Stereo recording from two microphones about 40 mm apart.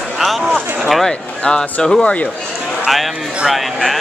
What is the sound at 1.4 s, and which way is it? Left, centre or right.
Speech, centre.